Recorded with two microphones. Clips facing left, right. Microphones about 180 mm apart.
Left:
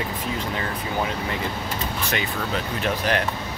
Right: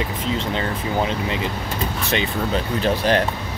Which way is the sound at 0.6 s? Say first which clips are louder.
Right 4 dB; 25° right (ahead or behind).